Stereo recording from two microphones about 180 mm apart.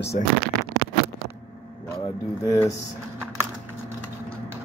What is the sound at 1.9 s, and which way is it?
Speech, 20° left (ahead or behind).